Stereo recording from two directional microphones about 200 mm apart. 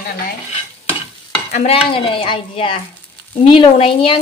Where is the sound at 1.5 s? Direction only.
40° left (ahead or behind).